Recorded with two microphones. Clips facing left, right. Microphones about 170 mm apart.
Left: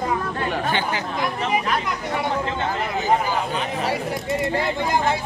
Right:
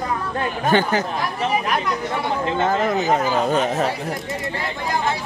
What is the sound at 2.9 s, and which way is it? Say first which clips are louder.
Speech: right 2 dB; 45° right (ahead or behind).